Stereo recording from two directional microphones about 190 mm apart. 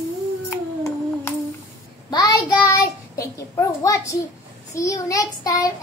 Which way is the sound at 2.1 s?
20° left (ahead or behind).